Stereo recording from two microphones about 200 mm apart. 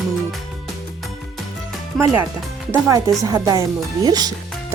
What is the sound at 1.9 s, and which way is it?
Speech, centre (ahead or behind).